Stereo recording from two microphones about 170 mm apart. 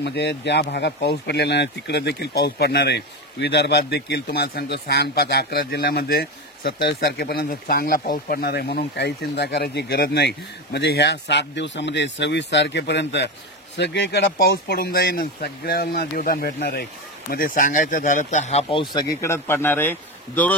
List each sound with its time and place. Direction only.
0.0 s speech: 80° left; by 20.5 s 10° left (ahead or behind)